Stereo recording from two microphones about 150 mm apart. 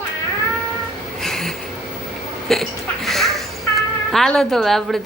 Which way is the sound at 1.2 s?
5° left (ahead or behind).